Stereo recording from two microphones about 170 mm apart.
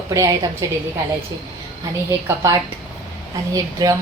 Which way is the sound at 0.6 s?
20° right (ahead or behind).